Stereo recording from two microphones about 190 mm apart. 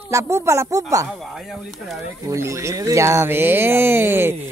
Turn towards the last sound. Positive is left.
turn(degrees=-10)  # may be behind; listen again after turning